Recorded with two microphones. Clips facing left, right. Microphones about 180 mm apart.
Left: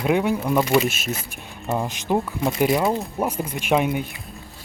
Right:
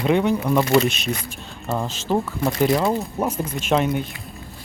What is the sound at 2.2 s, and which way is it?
Speech, centre (ahead or behind).